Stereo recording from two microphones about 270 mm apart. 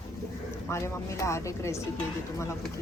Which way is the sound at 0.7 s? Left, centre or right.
Centre.